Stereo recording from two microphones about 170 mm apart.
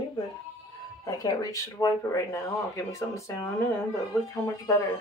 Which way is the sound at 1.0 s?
20° left (ahead or behind).